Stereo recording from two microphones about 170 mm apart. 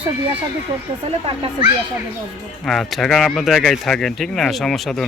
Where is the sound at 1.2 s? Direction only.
30° right (ahead or behind).